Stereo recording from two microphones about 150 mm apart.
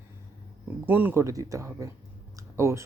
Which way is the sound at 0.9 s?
10° right (ahead or behind).